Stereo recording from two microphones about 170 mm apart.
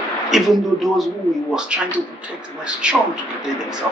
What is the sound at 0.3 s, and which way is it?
Speech, centre (ahead or behind).